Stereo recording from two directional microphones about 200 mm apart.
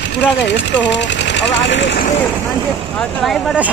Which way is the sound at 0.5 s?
60° left (ahead or behind).